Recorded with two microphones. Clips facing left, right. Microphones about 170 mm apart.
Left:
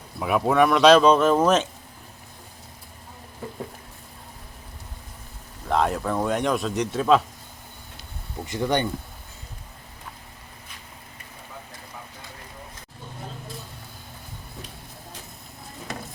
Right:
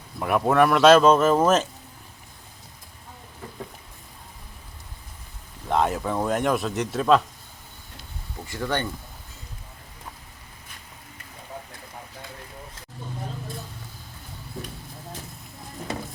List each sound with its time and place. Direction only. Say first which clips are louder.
0.2 s speech: even; centre (ahead or behind)
5.6 s speech: even; centre (ahead or behind)
8.4 s speech: left 4 dB; 20° left (ahead or behind)